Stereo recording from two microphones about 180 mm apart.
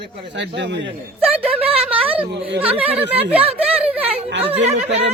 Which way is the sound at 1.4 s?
30° right (ahead or behind).